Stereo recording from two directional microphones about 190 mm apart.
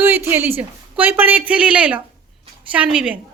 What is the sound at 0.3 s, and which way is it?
Speech, 10° right (ahead or behind).